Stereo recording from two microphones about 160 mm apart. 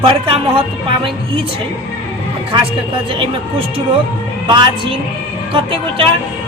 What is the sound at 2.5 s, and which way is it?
Speech, 30° right (ahead or behind).